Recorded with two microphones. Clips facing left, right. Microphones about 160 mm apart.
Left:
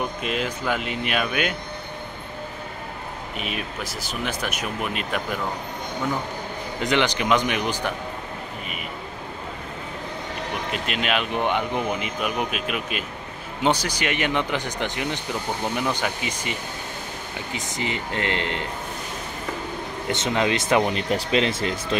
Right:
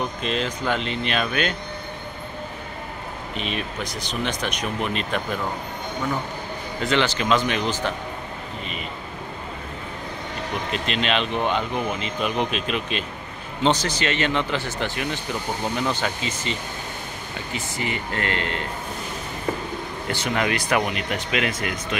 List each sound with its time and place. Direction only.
0.2 s speech: 10° left (ahead or behind)
3.3 s speech: 5° left (ahead or behind)
6.8 s speech: 15° left (ahead or behind)
10.7 s speech: 10° left (ahead or behind)
20.1 s speech: 20° left (ahead or behind)